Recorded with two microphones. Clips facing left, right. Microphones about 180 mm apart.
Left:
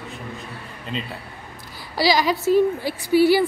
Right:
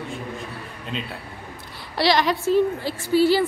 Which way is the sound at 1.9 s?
Centre (ahead or behind).